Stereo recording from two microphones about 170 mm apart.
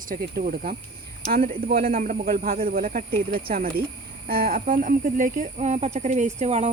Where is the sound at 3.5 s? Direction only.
60° right (ahead or behind); by 6.7 s 45° right (ahead or behind).